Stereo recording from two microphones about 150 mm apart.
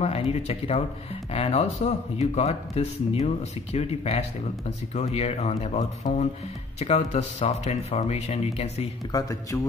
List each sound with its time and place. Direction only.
0.0 s speech: 45° left (ahead or behind)
9.1 s a man's voice: 20° left (ahead or behind)